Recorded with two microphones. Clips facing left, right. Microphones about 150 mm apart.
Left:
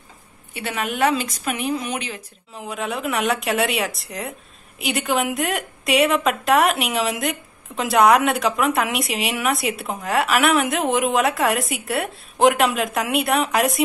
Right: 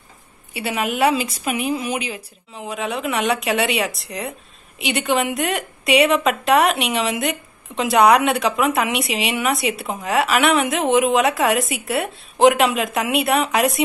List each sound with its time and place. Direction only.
0.5 s a woman's voice: 10° right (ahead or behind)